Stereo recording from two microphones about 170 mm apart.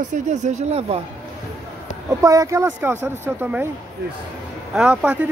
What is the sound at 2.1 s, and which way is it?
Speech, 20° right (ahead or behind).